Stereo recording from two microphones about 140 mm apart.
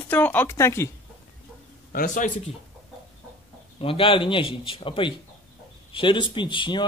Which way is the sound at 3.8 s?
40° left (ahead or behind).